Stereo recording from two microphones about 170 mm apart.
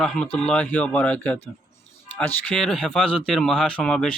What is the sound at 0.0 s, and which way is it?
Speech, 5° left (ahead or behind).